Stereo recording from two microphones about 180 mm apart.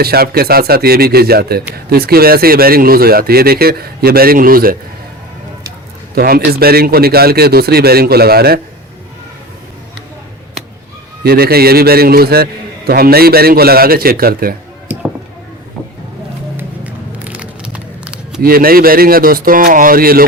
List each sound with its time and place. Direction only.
0.0 s a man's voice: 60° right (ahead or behind)
6.1 s a man's voice: 55° right (ahead or behind)
11.2 s a man's voice: 60° right (ahead or behind)
16.6 s a sound: 10° right (ahead or behind)
18.3 s speech: 55° right (ahead or behind)